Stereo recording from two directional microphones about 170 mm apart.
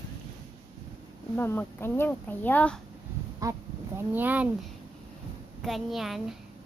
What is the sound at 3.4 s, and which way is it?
Speech, 20° right (ahead or behind).